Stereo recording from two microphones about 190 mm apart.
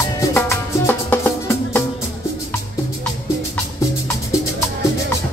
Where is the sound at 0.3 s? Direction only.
10° left (ahead or behind).